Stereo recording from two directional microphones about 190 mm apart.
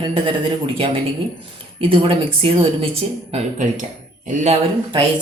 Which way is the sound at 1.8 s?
30° right (ahead or behind).